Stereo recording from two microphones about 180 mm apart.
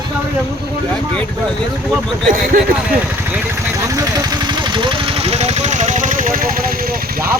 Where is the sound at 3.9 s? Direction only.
20° right (ahead or behind); by 7.3 s 55° right (ahead or behind).